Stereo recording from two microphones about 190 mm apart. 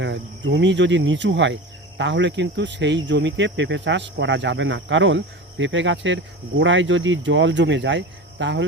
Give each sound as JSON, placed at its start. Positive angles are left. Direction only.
{"t": 0.0, "sound": "speech", "side_deg": -70}